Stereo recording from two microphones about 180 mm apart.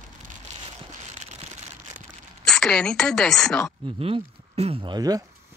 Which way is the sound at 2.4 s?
5° left (ahead or behind).